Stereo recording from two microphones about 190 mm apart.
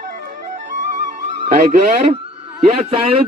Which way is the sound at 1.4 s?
45° right (ahead or behind).